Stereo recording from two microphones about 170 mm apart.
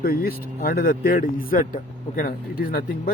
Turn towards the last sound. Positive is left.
turn(degrees=55)  # may be behind; listen again after turning